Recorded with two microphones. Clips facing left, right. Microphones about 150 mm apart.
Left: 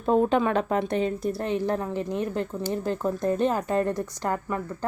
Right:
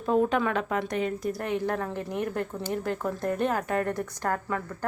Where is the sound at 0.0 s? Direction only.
30° left (ahead or behind).